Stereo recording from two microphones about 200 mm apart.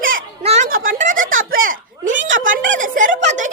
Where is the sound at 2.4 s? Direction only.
40° right (ahead or behind).